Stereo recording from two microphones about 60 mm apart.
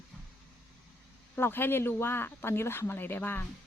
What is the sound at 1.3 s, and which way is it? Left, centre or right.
Speech, left.